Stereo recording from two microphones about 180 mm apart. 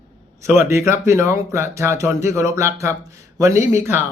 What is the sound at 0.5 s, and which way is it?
Speech, 15° right (ahead or behind).